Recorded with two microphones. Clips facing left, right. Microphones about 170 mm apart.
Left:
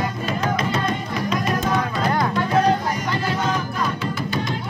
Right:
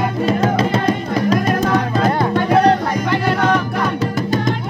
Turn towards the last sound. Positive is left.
turn(degrees=-65)  # may be behind; listen again after turning